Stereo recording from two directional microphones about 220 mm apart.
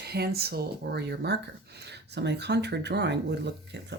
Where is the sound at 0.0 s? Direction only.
45° right (ahead or behind).